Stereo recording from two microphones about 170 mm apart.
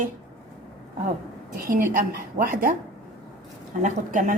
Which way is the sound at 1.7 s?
55° right (ahead or behind).